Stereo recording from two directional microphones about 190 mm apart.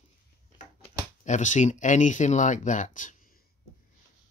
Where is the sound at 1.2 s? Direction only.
40° left (ahead or behind).